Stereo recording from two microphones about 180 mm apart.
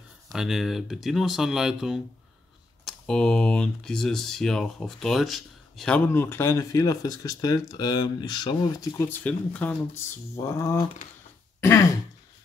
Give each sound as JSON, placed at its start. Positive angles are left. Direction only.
{"t": 0.3, "sound": "speech", "side_deg": 0}
{"t": 11.6, "sound": "throat clearing", "side_deg": 15}